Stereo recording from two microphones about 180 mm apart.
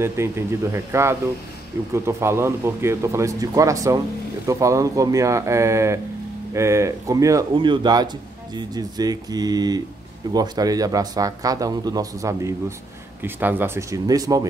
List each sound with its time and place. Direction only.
0.0 s a man's voice: 15° right (ahead or behind)